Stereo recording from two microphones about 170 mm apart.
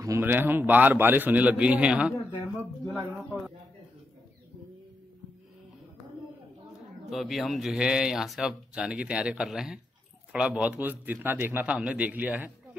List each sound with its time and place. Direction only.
0.0 s a man's voice: 15° right (ahead or behind)
7.1 s a man's voice: centre (ahead or behind)